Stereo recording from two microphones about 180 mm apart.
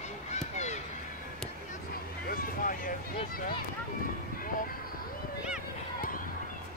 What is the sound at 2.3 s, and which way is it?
Vehicle, 50° left (ahead or behind).